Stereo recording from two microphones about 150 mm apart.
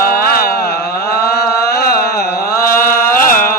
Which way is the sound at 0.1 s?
90° left.